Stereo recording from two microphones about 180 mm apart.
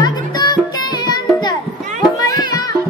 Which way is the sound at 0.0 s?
20° left (ahead or behind).